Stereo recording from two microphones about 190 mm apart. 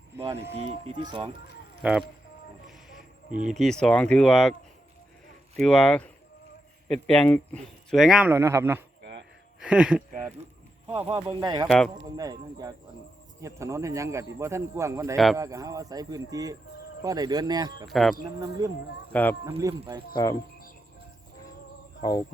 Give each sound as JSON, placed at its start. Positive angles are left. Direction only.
{"t": 0.2, "sound": "a man's voice", "side_deg": -15}
{"t": 1.8, "sound": "speech", "side_deg": -5}
{"t": 2.6, "sound": "a sound", "side_deg": 0}
{"t": 3.5, "sound": "speech", "side_deg": 0}
{"t": 5.5, "sound": "speech", "side_deg": 5}
{"t": 10.8, "sound": "a man's voice", "side_deg": -30}
{"t": 15.1, "sound": "speech", "side_deg": 0}
{"t": 15.4, "sound": "a man's voice", "side_deg": -15}
{"t": 17.8, "sound": "speech", "side_deg": 0}
{"t": 18.2, "sound": "a man's voice", "side_deg": -20}
{"t": 19.1, "sound": "speech", "side_deg": 10}
{"t": 19.5, "sound": "a man's voice", "side_deg": -15}
{"t": 20.1, "sound": "speech", "side_deg": 20}